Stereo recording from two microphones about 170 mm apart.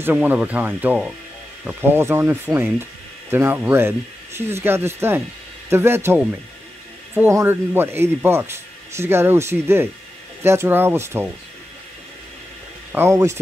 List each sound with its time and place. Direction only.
0.0 s speech: 10° right (ahead or behind)
12.9 s speech: 15° right (ahead or behind)